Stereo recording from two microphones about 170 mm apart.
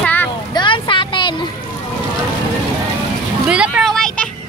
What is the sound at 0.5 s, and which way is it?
Vehicle, 30° left (ahead or behind).